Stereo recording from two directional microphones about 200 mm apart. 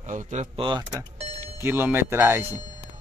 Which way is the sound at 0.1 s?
35° right (ahead or behind).